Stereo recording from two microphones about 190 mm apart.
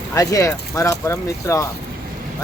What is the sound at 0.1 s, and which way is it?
Speech, 15° left (ahead or behind).